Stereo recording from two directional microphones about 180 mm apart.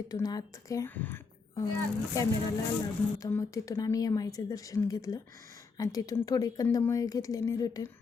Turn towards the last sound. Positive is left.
turn(degrees=20)  # may be behind; listen again after turning